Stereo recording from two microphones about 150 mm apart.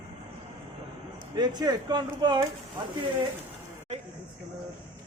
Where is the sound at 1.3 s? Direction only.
30° right (ahead or behind).